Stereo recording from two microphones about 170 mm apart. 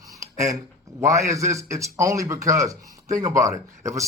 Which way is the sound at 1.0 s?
15° right (ahead or behind).